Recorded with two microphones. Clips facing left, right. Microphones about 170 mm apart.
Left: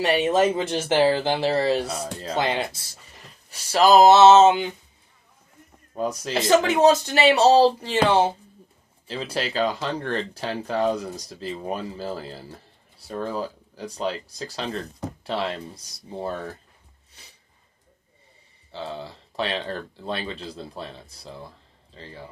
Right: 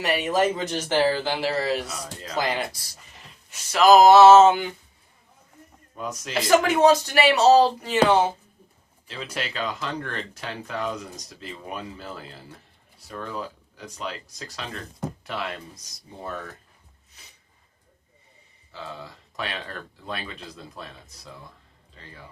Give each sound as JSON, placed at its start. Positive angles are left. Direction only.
{"t": 0.0, "sound": "speech", "side_deg": 30}
{"t": 5.9, "sound": "speech", "side_deg": 35}
{"t": 18.7, "sound": "speech", "side_deg": 30}